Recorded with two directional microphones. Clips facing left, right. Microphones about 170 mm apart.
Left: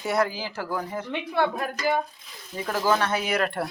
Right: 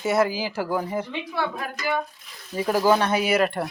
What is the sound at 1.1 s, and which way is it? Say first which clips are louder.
Speech: left 3 dB; 50° left (ahead or behind).